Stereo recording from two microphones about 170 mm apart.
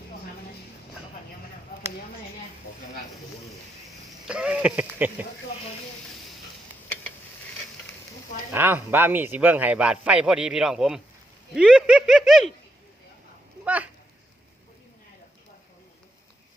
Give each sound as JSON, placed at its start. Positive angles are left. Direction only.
{"t": 4.3, "sound": "speech", "side_deg": -5}
{"t": 8.5, "sound": "speech", "side_deg": -10}
{"t": 13.7, "sound": "a sound", "side_deg": -10}